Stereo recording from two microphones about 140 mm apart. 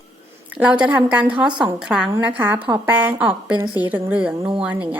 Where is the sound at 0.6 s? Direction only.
10° right (ahead or behind).